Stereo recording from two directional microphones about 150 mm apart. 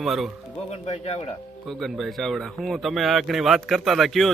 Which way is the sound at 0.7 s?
40° left (ahead or behind).